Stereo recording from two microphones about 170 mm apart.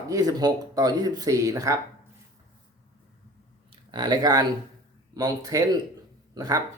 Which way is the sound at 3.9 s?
25° right (ahead or behind).